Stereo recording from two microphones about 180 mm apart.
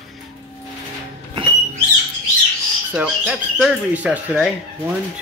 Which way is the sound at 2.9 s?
5° right (ahead or behind).